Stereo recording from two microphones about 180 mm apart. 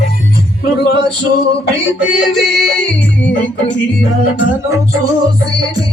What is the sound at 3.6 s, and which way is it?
Music, 75° left (ahead or behind).